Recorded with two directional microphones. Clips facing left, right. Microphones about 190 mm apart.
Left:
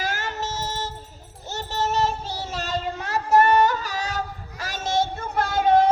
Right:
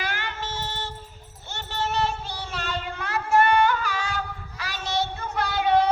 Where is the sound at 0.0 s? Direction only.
40° left (ahead or behind).